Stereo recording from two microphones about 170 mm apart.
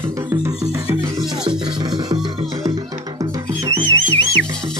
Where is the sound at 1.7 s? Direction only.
25° right (ahead or behind).